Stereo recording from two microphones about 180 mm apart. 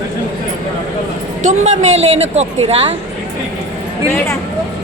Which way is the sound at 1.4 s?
40° right (ahead or behind).